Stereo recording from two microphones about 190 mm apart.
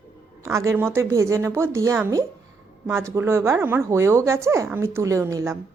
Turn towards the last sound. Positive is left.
turn(degrees=-15)  # may be behind; listen again after turning